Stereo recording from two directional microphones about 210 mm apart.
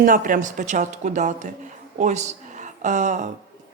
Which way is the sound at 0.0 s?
40° right (ahead or behind).